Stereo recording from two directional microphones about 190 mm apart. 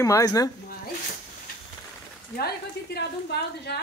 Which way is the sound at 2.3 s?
55° left (ahead or behind).